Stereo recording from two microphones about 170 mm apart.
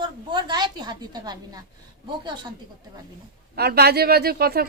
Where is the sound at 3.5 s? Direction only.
70° right (ahead or behind).